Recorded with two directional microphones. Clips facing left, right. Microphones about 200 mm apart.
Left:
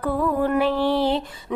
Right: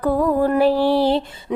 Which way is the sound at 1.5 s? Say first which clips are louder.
Right 3 dB; 20° right (ahead or behind).